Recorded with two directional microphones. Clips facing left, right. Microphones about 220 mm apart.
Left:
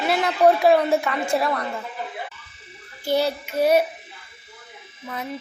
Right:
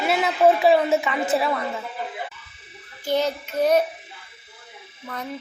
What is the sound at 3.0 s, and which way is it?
Speech, 10° left (ahead or behind).